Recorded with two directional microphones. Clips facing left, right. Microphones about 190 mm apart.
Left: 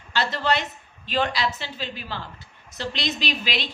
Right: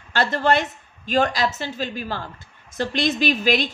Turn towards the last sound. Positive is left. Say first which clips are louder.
# right 8 dB
turn(degrees=-50)  # may be behind; listen again after turning